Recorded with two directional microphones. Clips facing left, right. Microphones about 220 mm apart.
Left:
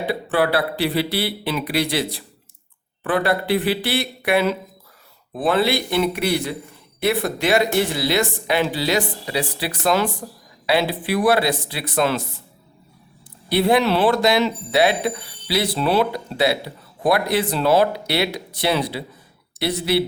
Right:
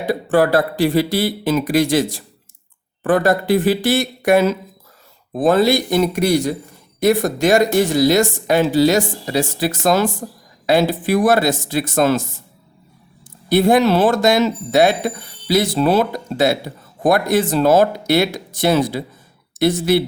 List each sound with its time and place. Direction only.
0.0 s speech: 45° right (ahead or behind)
13.5 s speech: 45° right (ahead or behind)